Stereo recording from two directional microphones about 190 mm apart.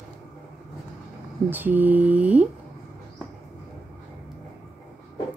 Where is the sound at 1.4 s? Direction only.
10° right (ahead or behind).